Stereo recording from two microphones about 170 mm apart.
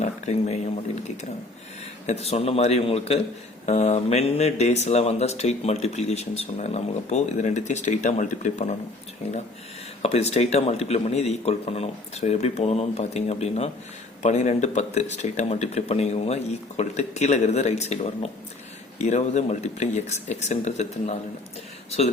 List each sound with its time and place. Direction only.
0.0 s speech: 40° left (ahead or behind)
2.0 s speech: 40° left (ahead or behind)
10.0 s speech: 40° left (ahead or behind)